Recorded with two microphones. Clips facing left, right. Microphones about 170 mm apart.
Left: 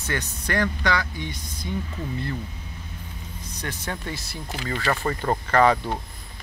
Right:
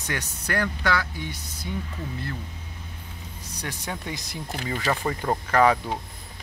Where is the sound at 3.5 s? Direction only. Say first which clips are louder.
Left 1 dB; 10° right (ahead or behind).